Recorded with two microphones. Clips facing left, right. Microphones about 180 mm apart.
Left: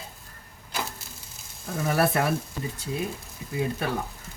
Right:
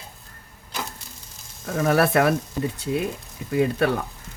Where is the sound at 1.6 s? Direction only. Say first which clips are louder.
Right 5 dB; 90° right; by 2.3 s 70° right (ahead or behind).